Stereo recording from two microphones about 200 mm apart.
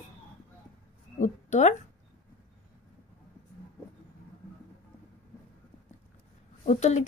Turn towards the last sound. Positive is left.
turn(degrees=35)  # may be behind; listen again after turning